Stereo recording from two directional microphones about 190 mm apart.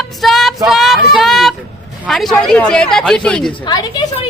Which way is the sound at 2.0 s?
Centre (ahead or behind).